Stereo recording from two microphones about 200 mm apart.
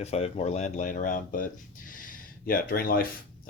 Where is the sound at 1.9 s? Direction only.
45° left (ahead or behind).